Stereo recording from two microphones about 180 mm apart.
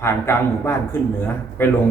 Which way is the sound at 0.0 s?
15° left (ahead or behind).